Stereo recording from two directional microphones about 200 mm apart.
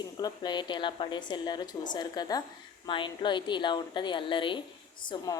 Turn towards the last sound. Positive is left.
turn(degrees=25)  # may be behind; listen again after turning